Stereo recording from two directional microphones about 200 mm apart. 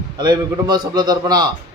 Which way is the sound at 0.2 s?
20° right (ahead or behind).